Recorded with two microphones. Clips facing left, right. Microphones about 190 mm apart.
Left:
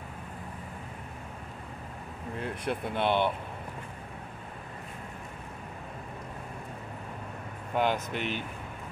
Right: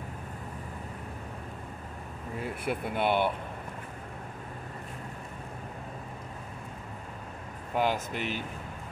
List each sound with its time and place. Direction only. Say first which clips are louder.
2.3 s speech: even; 5° right (ahead or behind)
7.7 s speech: even; 5° right (ahead or behind)